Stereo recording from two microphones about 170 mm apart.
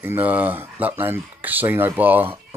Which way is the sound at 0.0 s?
10° right (ahead or behind).